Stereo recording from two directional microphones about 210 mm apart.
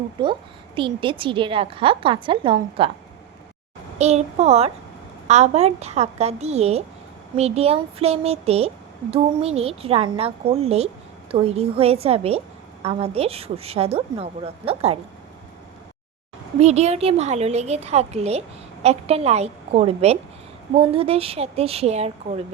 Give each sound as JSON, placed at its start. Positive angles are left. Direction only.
{"t": 0.2, "sound": "speech", "side_deg": -20}
{"t": 3.9, "sound": "a woman's voice", "side_deg": -30}
{"t": 16.6, "sound": "a woman's voice", "side_deg": -30}